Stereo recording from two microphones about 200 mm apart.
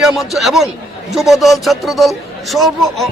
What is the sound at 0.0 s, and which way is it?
A man's voice, centre (ahead or behind).